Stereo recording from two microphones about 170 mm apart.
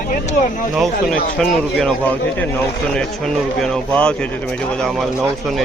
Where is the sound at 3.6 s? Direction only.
5° left (ahead or behind).